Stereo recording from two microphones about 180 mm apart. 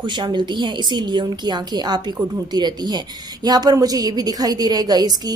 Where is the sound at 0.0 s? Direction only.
25° right (ahead or behind).